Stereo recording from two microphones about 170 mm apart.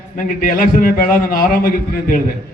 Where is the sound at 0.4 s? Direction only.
55° left (ahead or behind).